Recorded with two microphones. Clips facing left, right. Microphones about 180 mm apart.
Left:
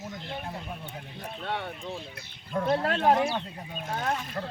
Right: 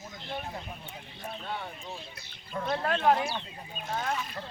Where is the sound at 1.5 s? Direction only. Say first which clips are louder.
Left 7 dB; 70° left (ahead or behind); by 2.7 s 55° left (ahead or behind).